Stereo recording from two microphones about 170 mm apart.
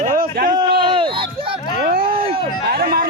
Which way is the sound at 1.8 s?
65° right (ahead or behind).